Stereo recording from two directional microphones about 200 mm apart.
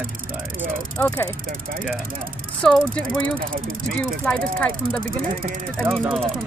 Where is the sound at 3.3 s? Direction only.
45° right (ahead or behind).